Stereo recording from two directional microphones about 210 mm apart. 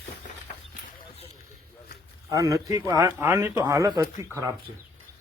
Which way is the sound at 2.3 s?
15° right (ahead or behind).